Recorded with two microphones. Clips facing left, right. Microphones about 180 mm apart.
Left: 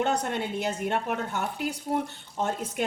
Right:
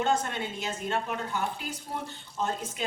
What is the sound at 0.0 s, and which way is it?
A woman's voice, 65° left (ahead or behind).